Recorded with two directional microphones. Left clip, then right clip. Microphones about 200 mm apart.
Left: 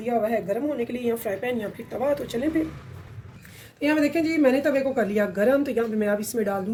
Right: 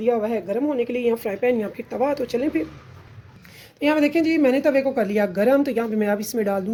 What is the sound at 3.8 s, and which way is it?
A woman's voice, 45° right (ahead or behind).